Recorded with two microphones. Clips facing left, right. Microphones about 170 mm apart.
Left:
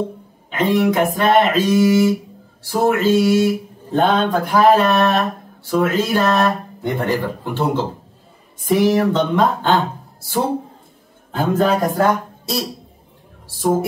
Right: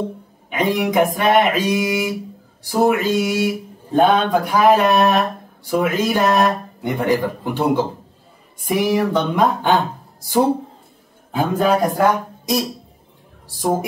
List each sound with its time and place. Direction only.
0.5 s speech: 15° right (ahead or behind)
11.3 s speech: 10° right (ahead or behind)